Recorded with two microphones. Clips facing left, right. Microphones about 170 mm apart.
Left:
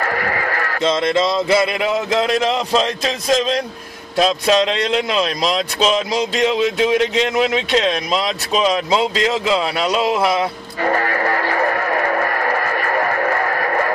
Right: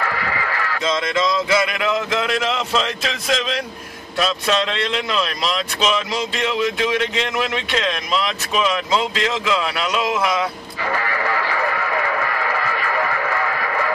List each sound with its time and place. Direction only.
0.0 s sheep: 45° left (ahead or behind)
0.7 s speech: 30° left (ahead or behind)
10.8 s radio: 45° left (ahead or behind)